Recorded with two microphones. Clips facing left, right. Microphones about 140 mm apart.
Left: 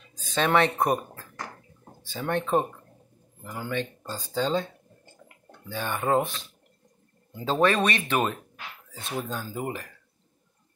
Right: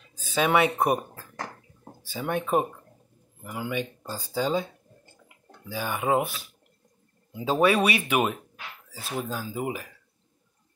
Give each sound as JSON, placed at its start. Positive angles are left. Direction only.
{"t": 0.1, "sound": "speech", "side_deg": -10}
{"t": 5.7, "sound": "speech", "side_deg": -10}